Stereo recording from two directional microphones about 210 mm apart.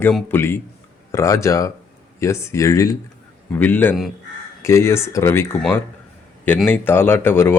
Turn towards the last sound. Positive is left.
turn(degrees=10)  # may be behind; listen again after turning